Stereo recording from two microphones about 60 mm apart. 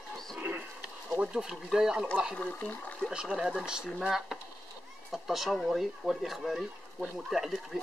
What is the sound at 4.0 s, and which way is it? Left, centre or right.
Speech, centre.